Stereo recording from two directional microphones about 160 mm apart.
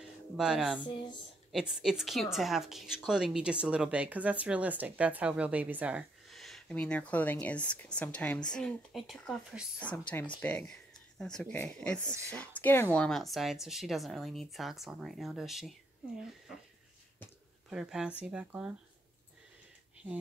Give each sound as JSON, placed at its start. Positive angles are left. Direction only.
{"t": 0.0, "sound": "music", "side_deg": -5}
{"t": 0.7, "sound": "speech", "side_deg": 30}
{"t": 1.5, "sound": "speech", "side_deg": -5}
{"t": 12.0, "sound": "speech", "side_deg": -20}
{"t": 12.3, "sound": "a woman's voice", "side_deg": 10}
{"t": 17.6, "sound": "speech", "side_deg": -5}